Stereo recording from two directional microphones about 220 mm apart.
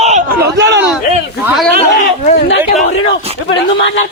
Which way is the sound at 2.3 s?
45° left (ahead or behind).